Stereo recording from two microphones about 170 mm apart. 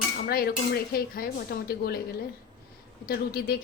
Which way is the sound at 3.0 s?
60° left (ahead or behind).